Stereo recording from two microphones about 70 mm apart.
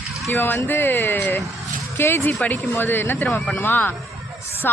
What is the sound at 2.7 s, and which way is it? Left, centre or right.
Speech, left.